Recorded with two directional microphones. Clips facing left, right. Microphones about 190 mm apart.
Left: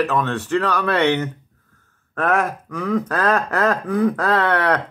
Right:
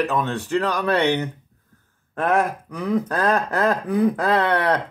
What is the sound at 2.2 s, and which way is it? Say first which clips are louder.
Speech: even; 35° right (ahead or behind).